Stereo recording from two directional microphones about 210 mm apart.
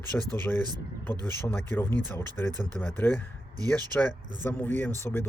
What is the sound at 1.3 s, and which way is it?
A man's voice, 10° left (ahead or behind).